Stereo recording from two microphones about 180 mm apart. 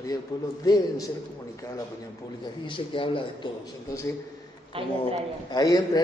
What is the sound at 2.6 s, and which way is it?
Speech, 30° left (ahead or behind).